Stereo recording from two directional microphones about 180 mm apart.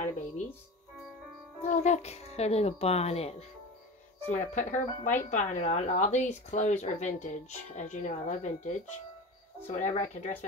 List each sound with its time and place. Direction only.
1.6 s speech: 40° left (ahead or behind)